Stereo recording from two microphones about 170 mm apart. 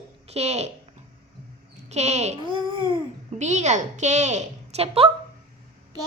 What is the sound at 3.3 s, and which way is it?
A woman's voice, 45° right (ahead or behind).